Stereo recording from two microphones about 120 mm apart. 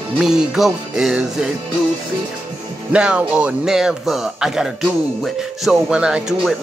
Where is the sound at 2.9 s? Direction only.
10° right (ahead or behind).